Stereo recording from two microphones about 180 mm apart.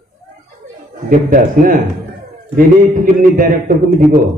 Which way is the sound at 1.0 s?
50° right (ahead or behind).